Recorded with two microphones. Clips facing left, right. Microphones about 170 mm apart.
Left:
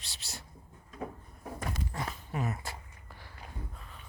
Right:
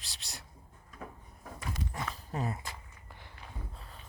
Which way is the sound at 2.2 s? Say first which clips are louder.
Even; 35° right (ahead or behind).